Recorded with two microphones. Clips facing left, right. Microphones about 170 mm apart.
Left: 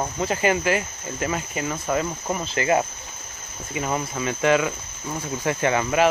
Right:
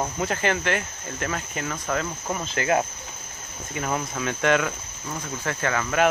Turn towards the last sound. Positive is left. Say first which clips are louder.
# left 4 dB
turn(degrees=20)  # may be behind; listen again after turning